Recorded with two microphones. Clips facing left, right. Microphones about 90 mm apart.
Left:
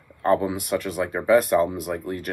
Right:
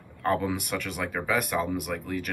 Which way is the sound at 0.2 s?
25° left (ahead or behind).